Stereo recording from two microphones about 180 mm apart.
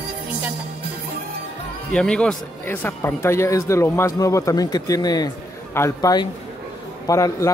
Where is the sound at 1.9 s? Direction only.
5° left (ahead or behind).